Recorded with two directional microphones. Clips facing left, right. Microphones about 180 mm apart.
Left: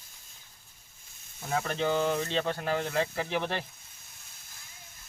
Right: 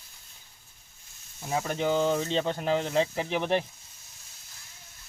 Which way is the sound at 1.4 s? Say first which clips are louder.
Right 1 dB; 15° right (ahead or behind).